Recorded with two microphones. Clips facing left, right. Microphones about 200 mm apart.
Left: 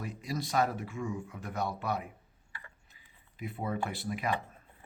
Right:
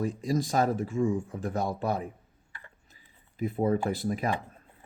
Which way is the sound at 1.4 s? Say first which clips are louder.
Right 5 dB; 45° right (ahead or behind).